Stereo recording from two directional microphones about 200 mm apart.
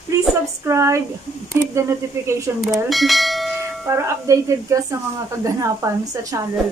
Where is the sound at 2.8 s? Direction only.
Centre (ahead or behind).